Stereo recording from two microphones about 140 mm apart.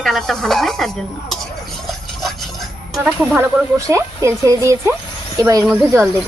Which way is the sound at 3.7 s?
20° right (ahead or behind).